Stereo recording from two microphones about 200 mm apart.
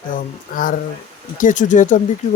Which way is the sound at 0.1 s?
40° left (ahead or behind).